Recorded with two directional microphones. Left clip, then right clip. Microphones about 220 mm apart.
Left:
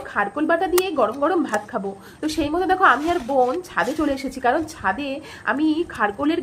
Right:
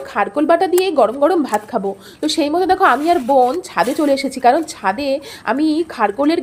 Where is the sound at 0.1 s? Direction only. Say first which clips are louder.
Right 6 dB; 25° right (ahead or behind).